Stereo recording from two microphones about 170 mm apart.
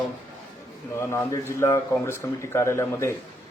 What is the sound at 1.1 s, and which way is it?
A man's voice, 15° left (ahead or behind).